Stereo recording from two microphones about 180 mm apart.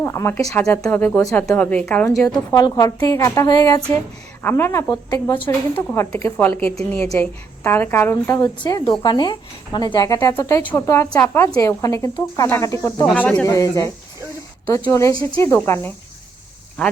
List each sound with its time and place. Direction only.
0.0 s a woman's voice: 15° left (ahead or behind)
2.5 s a woman's voice: 20° left (ahead or behind)
13.2 s a woman's voice: 5° left (ahead or behind)
13.5 s a woman's voice: 20° left (ahead or behind)